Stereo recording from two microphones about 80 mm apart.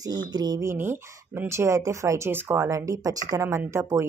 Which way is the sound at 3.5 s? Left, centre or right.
Right.